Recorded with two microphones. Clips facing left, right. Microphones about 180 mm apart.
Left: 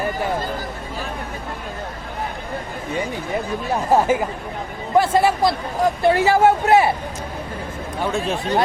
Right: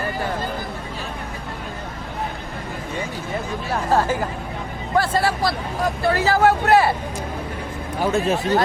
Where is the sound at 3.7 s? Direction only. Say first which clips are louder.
Left 3 dB; 15° left (ahead or behind).